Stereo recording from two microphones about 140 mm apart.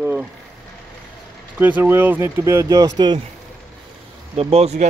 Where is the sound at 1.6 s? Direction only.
15° right (ahead or behind).